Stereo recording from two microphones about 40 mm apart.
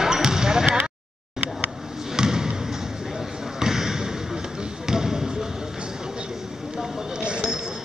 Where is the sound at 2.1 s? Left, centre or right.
Centre.